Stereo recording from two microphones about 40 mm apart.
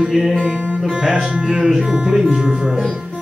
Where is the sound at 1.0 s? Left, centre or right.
Right.